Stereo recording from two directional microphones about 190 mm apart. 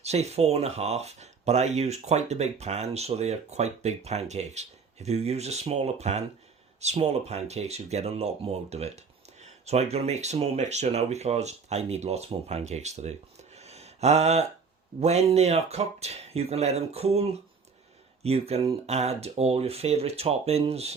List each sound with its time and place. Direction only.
0.0 s speech: 35° right (ahead or behind)
13.6 s a sound: 35° right (ahead or behind)
15.0 s speech: 35° right (ahead or behind)